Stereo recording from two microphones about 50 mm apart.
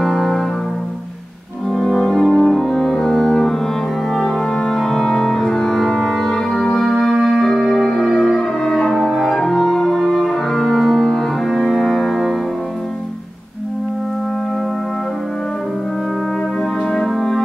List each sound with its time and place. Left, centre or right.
0.0 s music: centre
1.7 s music: centre
8.4 s music: centre
16.9 s music: centre